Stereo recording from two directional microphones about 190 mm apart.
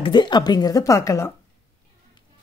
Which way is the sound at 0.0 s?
25° left (ahead or behind).